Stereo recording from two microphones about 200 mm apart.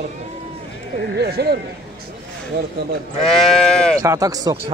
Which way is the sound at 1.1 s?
55° right (ahead or behind).